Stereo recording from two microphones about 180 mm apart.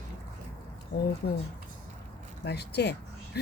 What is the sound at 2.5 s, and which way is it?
Speech, 65° left (ahead or behind).